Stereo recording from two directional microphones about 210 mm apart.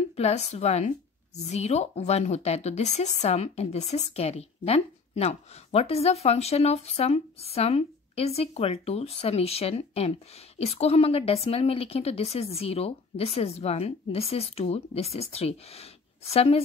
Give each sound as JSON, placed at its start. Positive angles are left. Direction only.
{"t": 0.1, "sound": "speech", "side_deg": 30}